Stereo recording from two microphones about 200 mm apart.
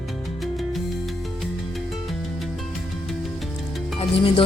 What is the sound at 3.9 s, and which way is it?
Music, 25° left (ahead or behind).